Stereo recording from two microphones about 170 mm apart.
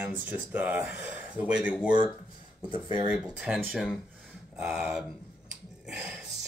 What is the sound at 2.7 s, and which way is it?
Speech, 30° right (ahead or behind).